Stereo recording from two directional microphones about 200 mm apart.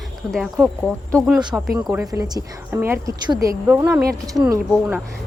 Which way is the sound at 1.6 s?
10° right (ahead or behind).